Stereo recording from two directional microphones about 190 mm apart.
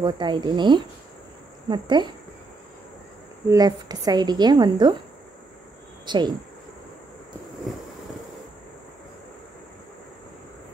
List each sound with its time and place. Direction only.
0.0 s speech: 25° right (ahead or behind)
3.4 s speech: 20° right (ahead or behind)
6.0 s speech: 25° right (ahead or behind)